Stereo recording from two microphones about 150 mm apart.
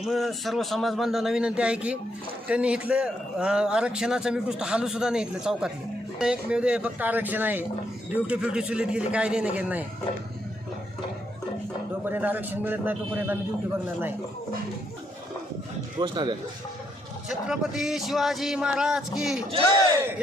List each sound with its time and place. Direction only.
0.0 s a man's voice: centre (ahead or behind)
12.0 s a man's voice: 10° right (ahead or behind)
16.0 s speech: 30° right (ahead or behind)
17.2 s a man's voice: 5° right (ahead or behind)